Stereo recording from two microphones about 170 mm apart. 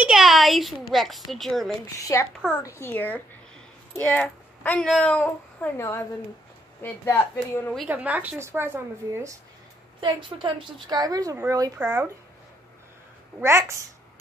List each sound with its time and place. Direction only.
0.0 s a child's voice: centre (ahead or behind)
2.0 s a woman's voice: 20° left (ahead or behind)
7.9 s a woman's voice: 10° right (ahead or behind)
9.9 s a woman's voice: 30° right (ahead or behind); by 12.1 s 10° right (ahead or behind)
13.4 s a woman's voice: 15° right (ahead or behind)